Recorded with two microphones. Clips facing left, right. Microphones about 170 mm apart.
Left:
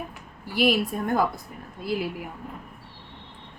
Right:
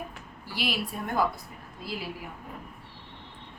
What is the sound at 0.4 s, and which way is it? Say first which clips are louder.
Speech: left 10 dB; 50° left (ahead or behind).